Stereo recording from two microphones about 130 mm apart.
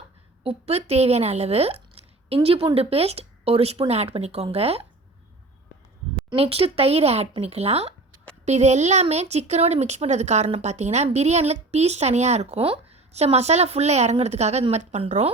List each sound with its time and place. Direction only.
0.4 s a woman's voice: 50° right (ahead or behind)
6.3 s a woman's voice: 50° right (ahead or behind)